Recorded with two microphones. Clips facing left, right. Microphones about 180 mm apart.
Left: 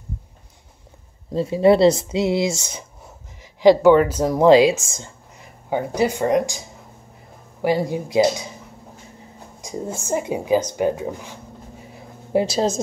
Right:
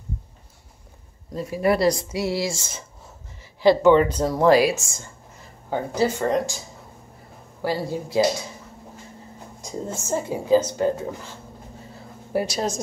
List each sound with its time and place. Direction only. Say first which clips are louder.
1.3 s speech: left 6 dB; 25° left (ahead or behind)
7.6 s speech: left 5 dB; 15° left (ahead or behind)
9.6 s speech: left 2 dB; 10° left (ahead or behind)
11.8 s a sound: left 1 dB; 15° left (ahead or behind)